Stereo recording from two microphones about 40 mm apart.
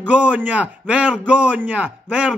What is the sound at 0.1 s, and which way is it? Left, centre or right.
A man's voice, right.